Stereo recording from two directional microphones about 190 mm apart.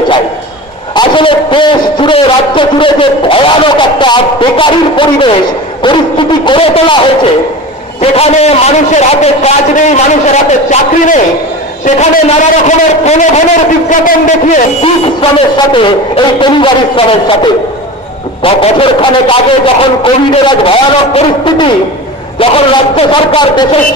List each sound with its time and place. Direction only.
0.9 s a man's voice: 25° left (ahead or behind)
8.0 s a man's voice: 30° left (ahead or behind)
15.5 s a man's voice: 25° left (ahead or behind)